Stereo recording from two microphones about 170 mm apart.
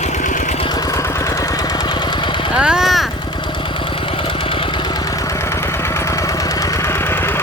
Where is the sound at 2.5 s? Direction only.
5° right (ahead or behind).